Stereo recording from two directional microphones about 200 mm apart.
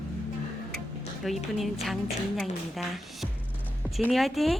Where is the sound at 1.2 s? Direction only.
Centre (ahead or behind).